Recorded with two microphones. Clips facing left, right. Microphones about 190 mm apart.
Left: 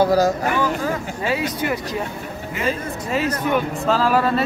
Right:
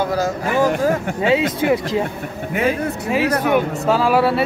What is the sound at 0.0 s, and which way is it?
Speech, 35° left (ahead or behind).